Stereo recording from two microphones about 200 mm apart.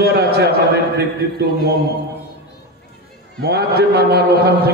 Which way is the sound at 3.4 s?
55° right (ahead or behind).